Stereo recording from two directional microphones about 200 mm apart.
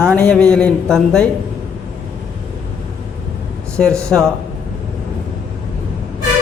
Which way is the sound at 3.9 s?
15° right (ahead or behind).